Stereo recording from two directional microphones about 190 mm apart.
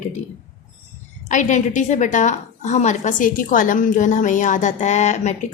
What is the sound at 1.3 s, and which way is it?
A woman's voice, 40° left (ahead or behind).